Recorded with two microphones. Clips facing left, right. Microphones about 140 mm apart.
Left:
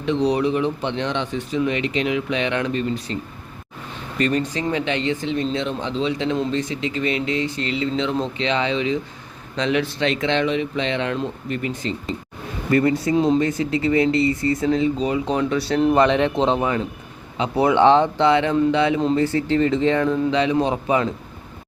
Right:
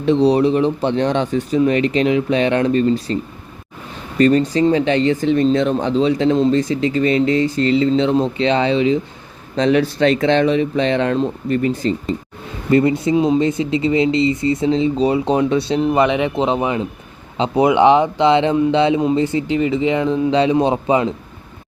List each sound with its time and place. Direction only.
0.0 s speech: 35° right (ahead or behind)
4.2 s speech: 35° right (ahead or behind)
12.7 s speech: 20° right (ahead or behind)
13.1 s speech: 10° right (ahead or behind)
13.4 s speech: 20° right (ahead or behind)
15.8 s speech: 5° right (ahead or behind)
16.6 s speech: 20° right (ahead or behind)
20.3 s speech: 30° right (ahead or behind)